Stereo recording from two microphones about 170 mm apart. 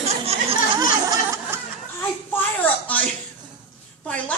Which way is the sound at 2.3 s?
10° left (ahead or behind).